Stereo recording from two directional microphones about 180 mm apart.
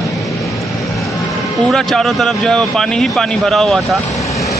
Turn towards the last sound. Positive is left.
turn(degrees=0)  # may be behind; listen again after turning